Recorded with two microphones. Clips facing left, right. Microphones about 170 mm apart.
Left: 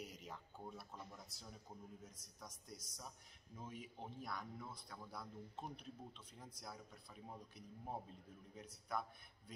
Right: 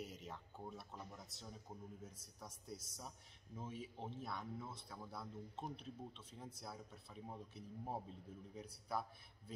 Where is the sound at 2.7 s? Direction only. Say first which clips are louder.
Right 5 dB; 25° right (ahead or behind).